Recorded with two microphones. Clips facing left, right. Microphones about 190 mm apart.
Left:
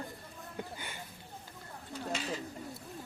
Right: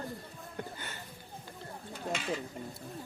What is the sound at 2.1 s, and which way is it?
Stir, 40° left (ahead or behind).